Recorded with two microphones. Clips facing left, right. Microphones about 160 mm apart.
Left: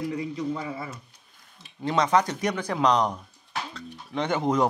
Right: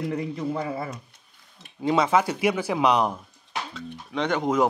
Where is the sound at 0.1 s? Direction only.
50° right (ahead or behind).